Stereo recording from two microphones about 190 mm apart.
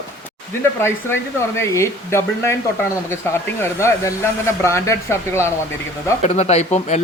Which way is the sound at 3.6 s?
15° left (ahead or behind).